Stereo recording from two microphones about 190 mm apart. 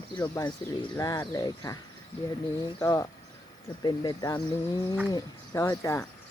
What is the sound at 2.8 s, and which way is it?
Speech, 20° left (ahead or behind).